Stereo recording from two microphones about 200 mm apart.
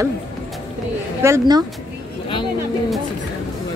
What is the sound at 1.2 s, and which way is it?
Speech, 15° right (ahead or behind).